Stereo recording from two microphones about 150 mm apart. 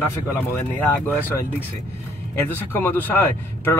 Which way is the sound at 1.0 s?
10° left (ahead or behind).